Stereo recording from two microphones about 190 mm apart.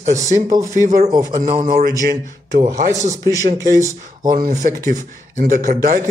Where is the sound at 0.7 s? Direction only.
40° right (ahead or behind).